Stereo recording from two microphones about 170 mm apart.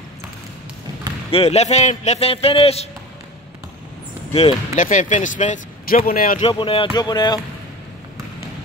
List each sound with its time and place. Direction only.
1.3 s a man's voice: 40° left (ahead or behind)
4.3 s speech: 35° left (ahead or behind)
4.7 s speech: 50° left (ahead or behind)
6.4 s speech: 30° left (ahead or behind)